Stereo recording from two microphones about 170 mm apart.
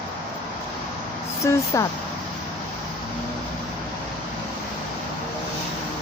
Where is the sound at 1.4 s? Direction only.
15° left (ahead or behind).